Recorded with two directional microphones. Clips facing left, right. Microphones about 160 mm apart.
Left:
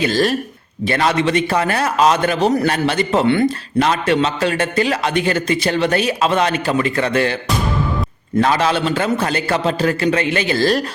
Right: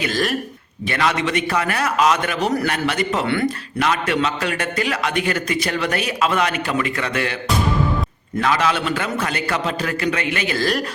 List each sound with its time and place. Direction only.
0.0 s a man's voice: 30° left (ahead or behind)
8.4 s a man's voice: 35° left (ahead or behind)